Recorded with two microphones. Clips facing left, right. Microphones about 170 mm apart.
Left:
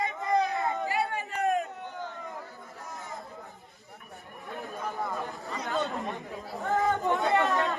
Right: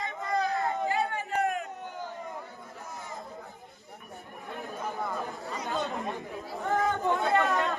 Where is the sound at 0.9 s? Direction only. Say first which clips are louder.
Right 1 dB; 15° left (ahead or behind).